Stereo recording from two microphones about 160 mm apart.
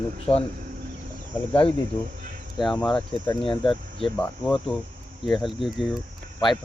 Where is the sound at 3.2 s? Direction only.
30° left (ahead or behind).